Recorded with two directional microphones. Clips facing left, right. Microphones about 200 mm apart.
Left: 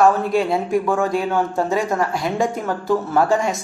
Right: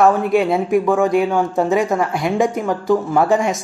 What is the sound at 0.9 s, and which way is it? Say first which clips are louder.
A woman's voice: right 4 dB; 15° right (ahead or behind).